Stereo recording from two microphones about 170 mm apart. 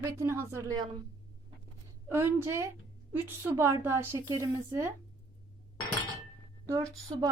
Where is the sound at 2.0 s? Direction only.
15° right (ahead or behind).